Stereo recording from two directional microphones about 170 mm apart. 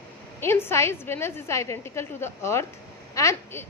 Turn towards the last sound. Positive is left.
turn(degrees=15)  # may be behind; listen again after turning